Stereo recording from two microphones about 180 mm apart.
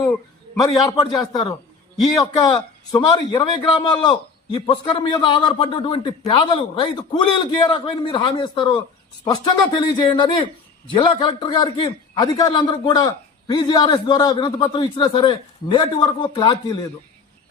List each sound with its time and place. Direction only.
0.6 s a man's voice: 20° left (ahead or behind)